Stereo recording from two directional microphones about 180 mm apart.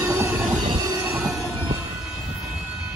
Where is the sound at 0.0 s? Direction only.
20° right (ahead or behind).